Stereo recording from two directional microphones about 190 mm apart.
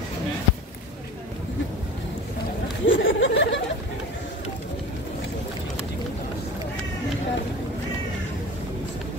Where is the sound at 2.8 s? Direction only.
85° left.